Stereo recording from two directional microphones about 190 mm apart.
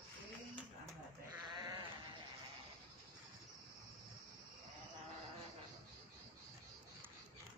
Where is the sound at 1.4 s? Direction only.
20° right (ahead or behind).